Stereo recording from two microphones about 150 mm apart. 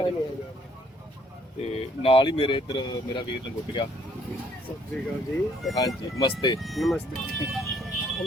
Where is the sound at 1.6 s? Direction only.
40° left (ahead or behind).